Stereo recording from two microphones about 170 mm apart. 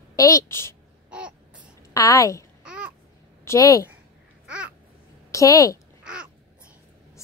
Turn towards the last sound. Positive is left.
turn(degrees=-5)  # may be behind; listen again after turning